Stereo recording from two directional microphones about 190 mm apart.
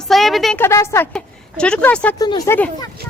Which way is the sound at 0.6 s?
15° left (ahead or behind).